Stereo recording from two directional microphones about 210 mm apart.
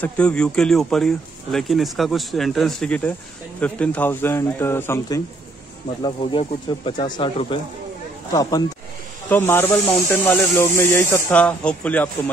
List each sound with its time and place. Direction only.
0.0 s speech: 5° left (ahead or behind)
6.0 s speech: 25° left (ahead or behind); by 12.1 s 5° left (ahead or behind)